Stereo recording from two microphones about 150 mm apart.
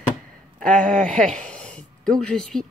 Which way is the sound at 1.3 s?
5° left (ahead or behind).